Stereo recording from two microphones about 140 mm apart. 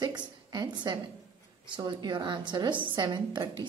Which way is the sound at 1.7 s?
35° right (ahead or behind).